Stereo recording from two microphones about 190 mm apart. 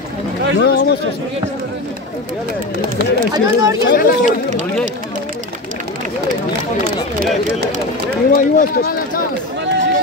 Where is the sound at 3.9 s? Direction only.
45° left (ahead or behind).